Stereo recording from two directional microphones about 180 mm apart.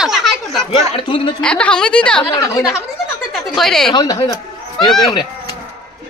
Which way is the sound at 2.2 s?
20° left (ahead or behind).